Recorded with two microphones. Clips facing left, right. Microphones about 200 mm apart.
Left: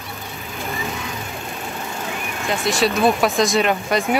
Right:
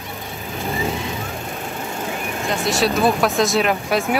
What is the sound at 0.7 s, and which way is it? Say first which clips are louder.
Vehicle: right 6 dB; 30° right (ahead or behind).